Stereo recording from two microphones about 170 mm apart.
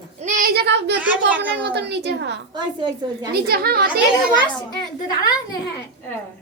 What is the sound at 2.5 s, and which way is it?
Speech, 25° right (ahead or behind).